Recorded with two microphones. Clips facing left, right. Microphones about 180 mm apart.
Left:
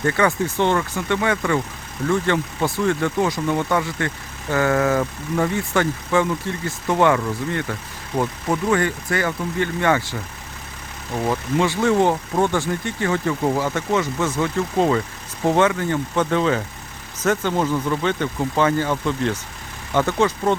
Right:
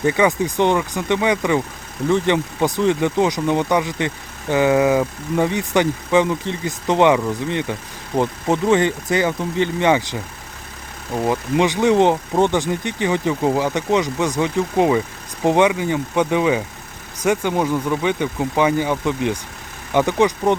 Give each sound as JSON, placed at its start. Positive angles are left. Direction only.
{"t": 0.0, "sound": "speech", "side_deg": -15}